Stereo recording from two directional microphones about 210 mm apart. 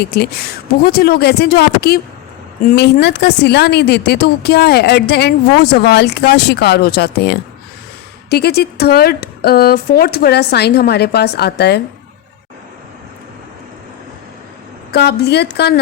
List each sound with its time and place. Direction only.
0.0 s a woman's voice: 50° left (ahead or behind)
14.9 s a woman's voice: 50° left (ahead or behind)